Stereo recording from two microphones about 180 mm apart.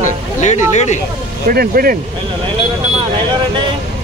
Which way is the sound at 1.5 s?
55° right (ahead or behind).